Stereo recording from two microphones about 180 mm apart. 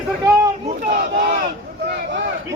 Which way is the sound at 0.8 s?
60° right (ahead or behind).